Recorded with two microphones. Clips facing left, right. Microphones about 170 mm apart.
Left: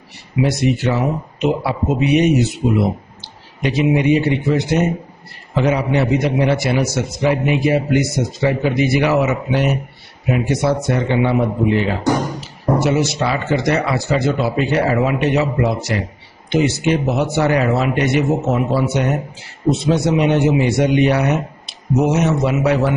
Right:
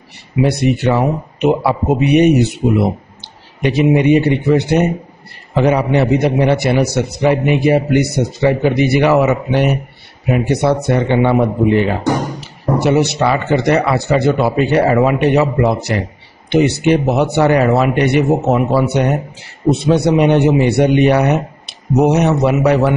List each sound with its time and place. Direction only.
0.4 s a man's voice: 60° right (ahead or behind)
12.8 s a man's voice: 65° right (ahead or behind)